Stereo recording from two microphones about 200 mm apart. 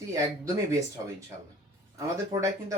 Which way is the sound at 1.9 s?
15° right (ahead or behind).